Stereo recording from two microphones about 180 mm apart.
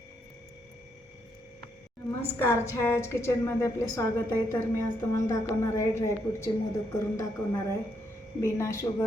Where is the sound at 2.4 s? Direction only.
15° left (ahead or behind).